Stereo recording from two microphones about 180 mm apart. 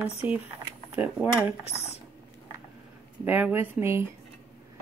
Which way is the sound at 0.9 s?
5° right (ahead or behind).